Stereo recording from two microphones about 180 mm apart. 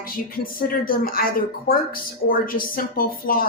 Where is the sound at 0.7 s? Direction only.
55° left (ahead or behind).